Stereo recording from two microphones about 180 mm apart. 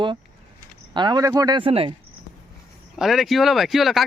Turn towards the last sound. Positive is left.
turn(degrees=0)  # may be behind; listen again after turning